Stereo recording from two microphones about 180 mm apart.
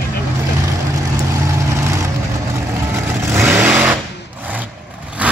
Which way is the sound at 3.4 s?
5° right (ahead or behind).